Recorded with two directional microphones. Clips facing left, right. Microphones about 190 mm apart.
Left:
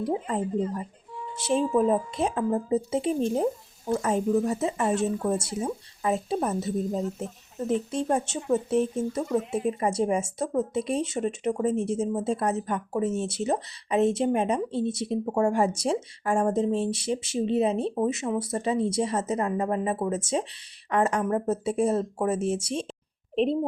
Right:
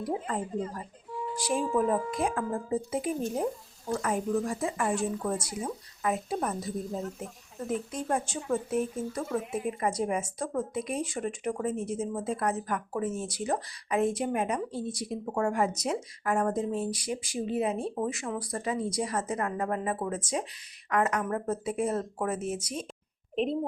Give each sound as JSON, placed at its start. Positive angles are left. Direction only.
{"t": 0.0, "sound": "a child's voice", "side_deg": 20}